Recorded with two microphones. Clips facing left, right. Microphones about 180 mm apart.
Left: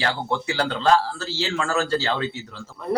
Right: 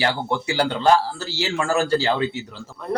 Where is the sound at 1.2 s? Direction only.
15° right (ahead or behind).